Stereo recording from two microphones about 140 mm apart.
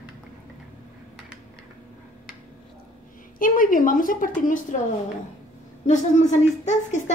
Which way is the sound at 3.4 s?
75° left (ahead or behind).